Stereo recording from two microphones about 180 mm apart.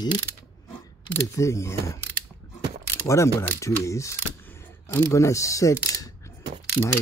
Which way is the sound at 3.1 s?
15° left (ahead or behind).